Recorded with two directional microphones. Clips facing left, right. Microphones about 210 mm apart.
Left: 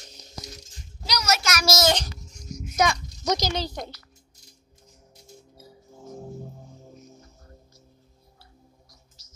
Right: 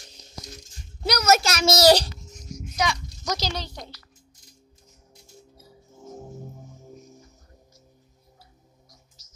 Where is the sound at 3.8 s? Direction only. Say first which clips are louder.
Left 5 dB; 50° left (ahead or behind).